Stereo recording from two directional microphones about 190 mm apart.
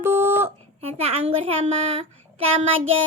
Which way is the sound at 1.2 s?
30° right (ahead or behind).